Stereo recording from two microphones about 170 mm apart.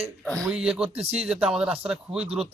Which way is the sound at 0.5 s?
5° right (ahead or behind).